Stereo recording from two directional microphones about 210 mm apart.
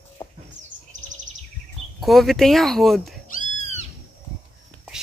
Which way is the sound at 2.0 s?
Centre (ahead or behind).